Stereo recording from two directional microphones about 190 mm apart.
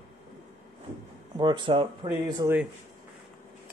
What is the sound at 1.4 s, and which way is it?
Speech, 25° right (ahead or behind).